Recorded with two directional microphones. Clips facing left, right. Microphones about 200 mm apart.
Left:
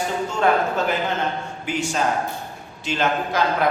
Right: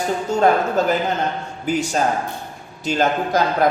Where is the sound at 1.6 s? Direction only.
40° right (ahead or behind).